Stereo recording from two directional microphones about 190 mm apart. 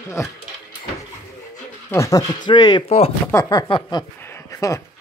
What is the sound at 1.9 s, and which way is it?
Speech, 15° left (ahead or behind).